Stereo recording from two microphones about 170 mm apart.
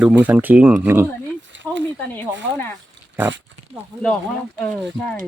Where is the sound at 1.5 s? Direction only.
90° right.